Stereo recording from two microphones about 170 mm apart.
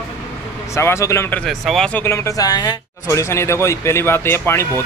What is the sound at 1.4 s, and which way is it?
Speech, centre (ahead or behind).